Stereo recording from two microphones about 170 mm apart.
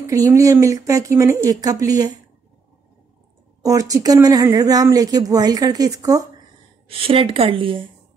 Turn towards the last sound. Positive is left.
turn(degrees=-30)  # may be behind; listen again after turning